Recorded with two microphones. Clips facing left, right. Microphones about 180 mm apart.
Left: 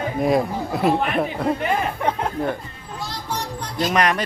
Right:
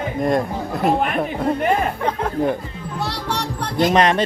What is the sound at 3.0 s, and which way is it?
Music, 70° right (ahead or behind).